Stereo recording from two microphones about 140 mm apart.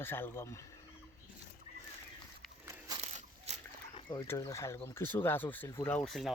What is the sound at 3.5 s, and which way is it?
Dog, 50° right (ahead or behind).